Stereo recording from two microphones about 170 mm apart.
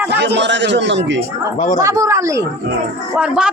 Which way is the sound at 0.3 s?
90° right.